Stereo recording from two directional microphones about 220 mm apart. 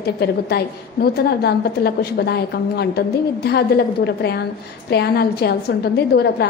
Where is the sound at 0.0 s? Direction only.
45° left (ahead or behind).